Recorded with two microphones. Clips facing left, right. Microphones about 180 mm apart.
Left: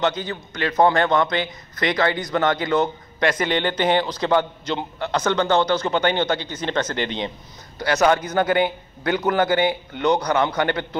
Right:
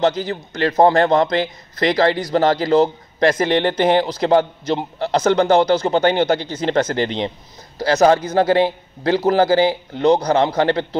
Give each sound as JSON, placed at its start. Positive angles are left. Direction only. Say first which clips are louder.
{"t": 0.0, "sound": "a man's voice", "louder": "right 5 dB", "side_deg": -30}